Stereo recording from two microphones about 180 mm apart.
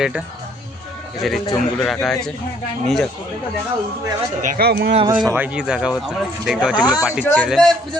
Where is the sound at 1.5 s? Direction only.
Centre (ahead or behind).